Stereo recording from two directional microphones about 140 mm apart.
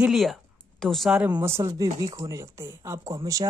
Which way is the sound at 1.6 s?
25° right (ahead or behind).